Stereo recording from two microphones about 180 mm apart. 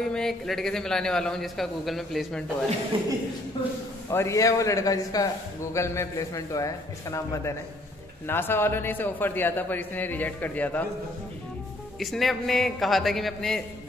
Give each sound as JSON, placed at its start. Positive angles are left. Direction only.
{"t": 0.0, "sound": "a man's voice", "side_deg": 5}
{"t": 2.9, "sound": "speech", "side_deg": -30}
{"t": 4.1, "sound": "a man's voice", "side_deg": 15}
{"t": 12.0, "sound": "a man's voice", "side_deg": 0}